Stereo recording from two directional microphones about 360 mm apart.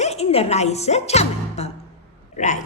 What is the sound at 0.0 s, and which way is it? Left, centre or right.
Speech, centre.